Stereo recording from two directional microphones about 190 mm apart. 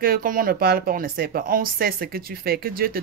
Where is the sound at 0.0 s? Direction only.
50° right (ahead or behind).